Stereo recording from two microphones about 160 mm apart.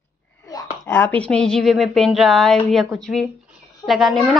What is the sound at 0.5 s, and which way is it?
A woman's voice, 20° left (ahead or behind).